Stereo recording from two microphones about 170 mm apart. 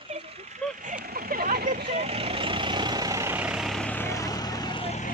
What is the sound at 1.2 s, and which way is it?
Vehicle, 60° right (ahead or behind).